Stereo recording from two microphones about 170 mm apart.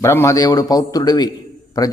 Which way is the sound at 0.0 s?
15° left (ahead or behind).